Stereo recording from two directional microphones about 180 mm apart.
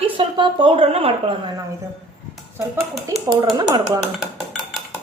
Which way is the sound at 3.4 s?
25° right (ahead or behind).